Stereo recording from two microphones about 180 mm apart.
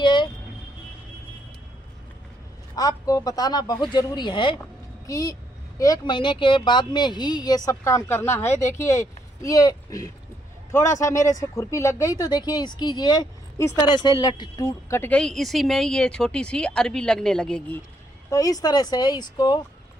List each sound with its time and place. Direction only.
0.0 s music: 25° left (ahead or behind)
2.7 s speech: 20° left (ahead or behind)
18.3 s speech: 20° left (ahead or behind)